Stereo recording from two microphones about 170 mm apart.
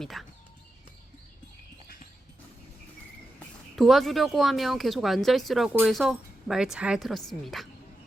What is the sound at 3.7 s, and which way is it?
Speech, centre (ahead or behind).